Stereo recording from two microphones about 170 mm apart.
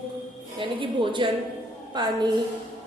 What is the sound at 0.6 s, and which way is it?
A woman's voice, 30° right (ahead or behind).